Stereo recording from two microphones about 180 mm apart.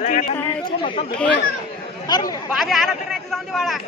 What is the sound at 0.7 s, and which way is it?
Speech, 30° left (ahead or behind).